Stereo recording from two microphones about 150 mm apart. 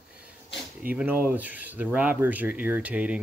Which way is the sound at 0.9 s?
10° right (ahead or behind).